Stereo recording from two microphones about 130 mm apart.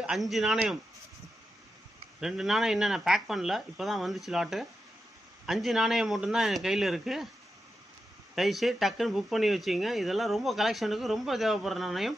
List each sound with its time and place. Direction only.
0.0 s speech: centre (ahead or behind)
2.1 s speech: 5° right (ahead or behind)
8.4 s speech: centre (ahead or behind)